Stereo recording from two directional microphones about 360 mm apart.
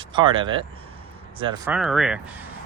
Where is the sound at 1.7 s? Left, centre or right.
Centre.